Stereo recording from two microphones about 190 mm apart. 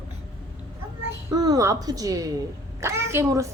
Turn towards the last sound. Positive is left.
turn(degrees=-15)  # may be behind; listen again after turning